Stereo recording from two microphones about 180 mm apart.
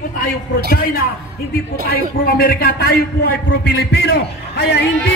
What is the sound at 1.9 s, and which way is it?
A man's voice, 55° left (ahead or behind).